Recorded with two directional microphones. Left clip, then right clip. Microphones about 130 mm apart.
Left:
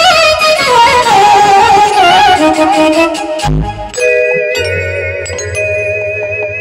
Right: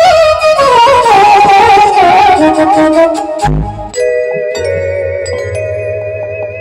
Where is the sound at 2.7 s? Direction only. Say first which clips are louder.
Right 2 dB; 55° right (ahead or behind).